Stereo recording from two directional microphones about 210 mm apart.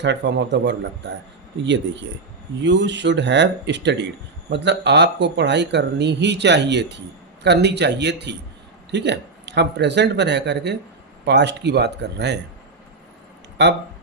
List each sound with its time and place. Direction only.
0.0 s speech: 55° right (ahead or behind)